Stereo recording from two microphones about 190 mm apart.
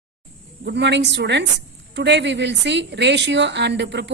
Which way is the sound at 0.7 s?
65° right (ahead or behind).